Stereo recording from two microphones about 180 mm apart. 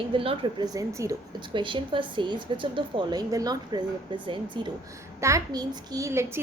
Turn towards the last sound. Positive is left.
turn(degrees=-15)  # may be behind; listen again after turning